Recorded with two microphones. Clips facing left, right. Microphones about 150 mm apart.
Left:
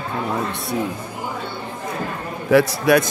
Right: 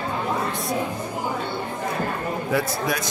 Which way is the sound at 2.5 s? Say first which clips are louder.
Left 11 dB; 85° left.